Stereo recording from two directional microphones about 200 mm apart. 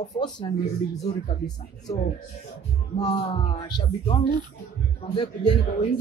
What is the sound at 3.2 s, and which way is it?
Speech, 35° left (ahead or behind).